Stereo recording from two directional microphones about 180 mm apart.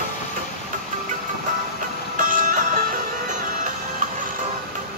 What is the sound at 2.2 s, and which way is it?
Music, 50° right (ahead or behind).